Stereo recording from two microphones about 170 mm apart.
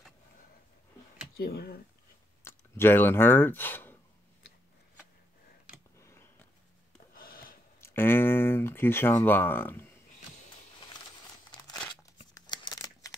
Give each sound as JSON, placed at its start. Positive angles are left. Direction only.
{"t": 1.3, "sound": "speech", "side_deg": 65}
{"t": 2.4, "sound": "speech", "side_deg": 15}
{"t": 5.9, "sound": "tick-tock", "side_deg": 15}
{"t": 7.2, "sound": "a sound", "side_deg": 55}
{"t": 7.8, "sound": "speech", "side_deg": 15}
{"t": 12.4, "sound": "a sound", "side_deg": 25}